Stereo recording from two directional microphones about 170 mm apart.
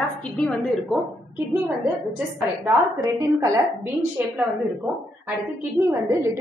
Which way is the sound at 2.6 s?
20° right (ahead or behind).